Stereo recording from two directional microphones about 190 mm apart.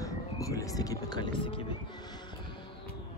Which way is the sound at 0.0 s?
15° left (ahead or behind).